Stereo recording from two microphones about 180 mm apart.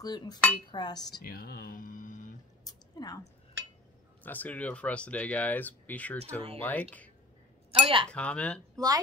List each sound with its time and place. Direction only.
0.0 s a sound: 20° left (ahead or behind)
1.2 s speech: 55° left (ahead or behind)
2.6 s a sound: 20° left (ahead or behind)
4.2 s speech: 10° left (ahead or behind)
7.8 s speech: 30° right (ahead or behind)
8.1 s speech: 5° left (ahead or behind)
8.7 s speech: 20° right (ahead or behind)